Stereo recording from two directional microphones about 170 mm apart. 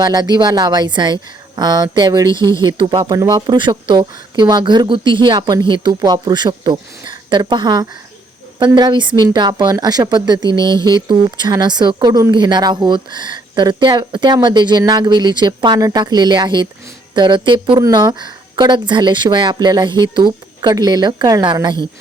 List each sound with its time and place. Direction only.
0.0 s a woman's voice: 25° right (ahead or behind)